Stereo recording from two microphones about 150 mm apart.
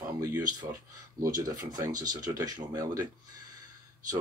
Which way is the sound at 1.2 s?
20° right (ahead or behind).